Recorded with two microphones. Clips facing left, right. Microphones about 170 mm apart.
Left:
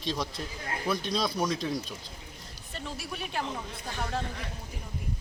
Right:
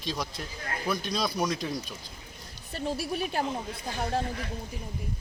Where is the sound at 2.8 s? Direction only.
35° right (ahead or behind).